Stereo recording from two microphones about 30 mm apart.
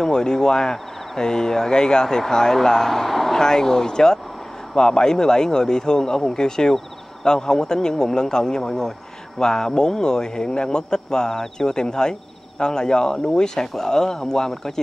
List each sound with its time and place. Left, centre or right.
0.0 s a man's voice: left
3.3 s a man's voice: centre